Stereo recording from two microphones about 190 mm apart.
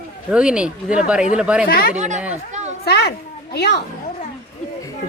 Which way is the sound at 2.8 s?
60° left (ahead or behind).